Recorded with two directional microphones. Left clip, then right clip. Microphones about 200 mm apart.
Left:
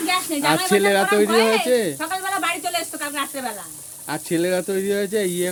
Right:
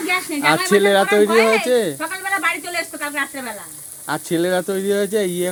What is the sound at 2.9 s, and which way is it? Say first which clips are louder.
Speech: right 3 dB; 20° left (ahead or behind).